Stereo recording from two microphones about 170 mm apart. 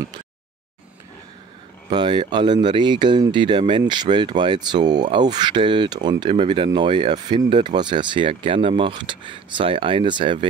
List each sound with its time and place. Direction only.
1.9 s speech: 25° right (ahead or behind)